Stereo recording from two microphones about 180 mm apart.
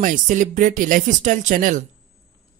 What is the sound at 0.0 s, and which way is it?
A man's voice, 45° right (ahead or behind).